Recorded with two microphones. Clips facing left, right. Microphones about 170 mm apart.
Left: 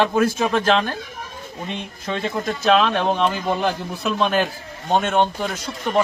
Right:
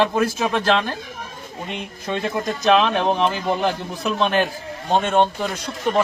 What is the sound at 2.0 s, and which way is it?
Speech, 20° right (ahead or behind).